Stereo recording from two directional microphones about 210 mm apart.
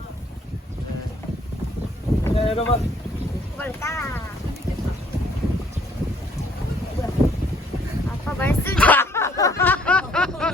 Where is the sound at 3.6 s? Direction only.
10° left (ahead or behind).